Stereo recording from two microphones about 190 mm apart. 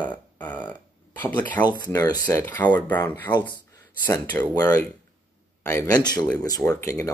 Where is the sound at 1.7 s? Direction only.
20° left (ahead or behind).